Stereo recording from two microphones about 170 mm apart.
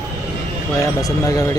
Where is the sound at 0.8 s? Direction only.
20° left (ahead or behind).